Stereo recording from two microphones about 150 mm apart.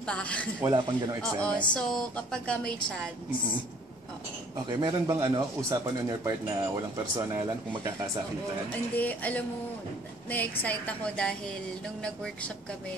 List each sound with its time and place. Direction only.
0.0 s a woman's voice: 5° left (ahead or behind)
0.7 s speech: 30° right (ahead or behind)
1.2 s a woman's voice: 5° left (ahead or behind)
4.6 s speech: 25° right (ahead or behind)
8.9 s a woman's voice: 10° left (ahead or behind)